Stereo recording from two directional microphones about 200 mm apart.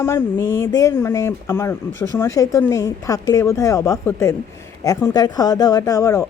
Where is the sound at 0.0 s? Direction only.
10° left (ahead or behind).